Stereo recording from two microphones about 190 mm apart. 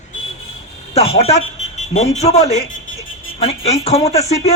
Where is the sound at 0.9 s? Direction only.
30° left (ahead or behind).